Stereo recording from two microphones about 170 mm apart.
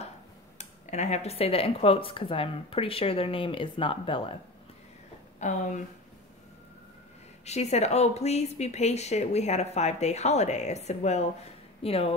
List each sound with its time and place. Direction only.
0.6 s speech: 40° left (ahead or behind)
5.4 s speech: 45° left (ahead or behind)
7.4 s speech: 40° left (ahead or behind)